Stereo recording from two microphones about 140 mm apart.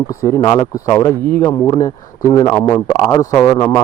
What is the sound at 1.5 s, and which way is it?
A man's voice, 25° left (ahead or behind).